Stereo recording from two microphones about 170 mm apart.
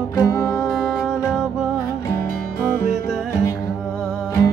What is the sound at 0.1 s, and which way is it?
Music, 20° left (ahead or behind).